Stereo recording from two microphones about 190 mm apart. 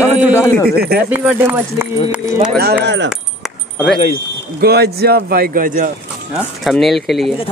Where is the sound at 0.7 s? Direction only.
55° right (ahead or behind).